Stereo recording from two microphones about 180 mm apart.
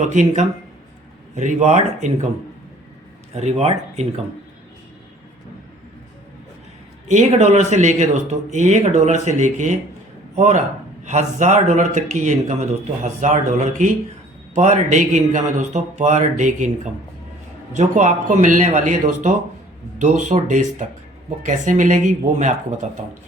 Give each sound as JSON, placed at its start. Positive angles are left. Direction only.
{"t": 0.0, "sound": "a man's voice", "side_deg": -40}
{"t": 3.3, "sound": "a man's voice", "side_deg": -35}
{"t": 7.1, "sound": "a man's voice", "side_deg": -40}